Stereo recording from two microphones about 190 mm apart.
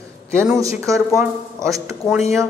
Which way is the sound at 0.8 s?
15° right (ahead or behind).